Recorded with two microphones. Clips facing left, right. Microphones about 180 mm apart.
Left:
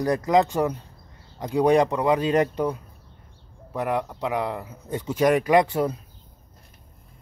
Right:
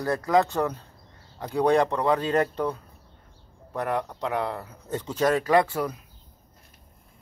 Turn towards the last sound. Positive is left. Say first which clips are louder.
# left 3 dB
turn(degrees=20)  # may be behind; listen again after turning